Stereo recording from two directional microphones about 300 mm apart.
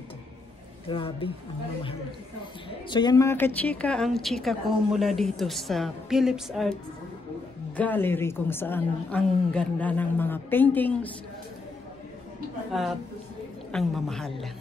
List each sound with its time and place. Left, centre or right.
0.8 s a woman's voice: centre
2.9 s a woman's voice: centre
7.7 s a woman's voice: centre
12.7 s a woman's voice: centre